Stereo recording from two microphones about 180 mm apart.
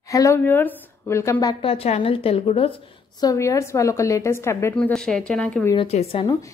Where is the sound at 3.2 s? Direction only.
20° left (ahead or behind).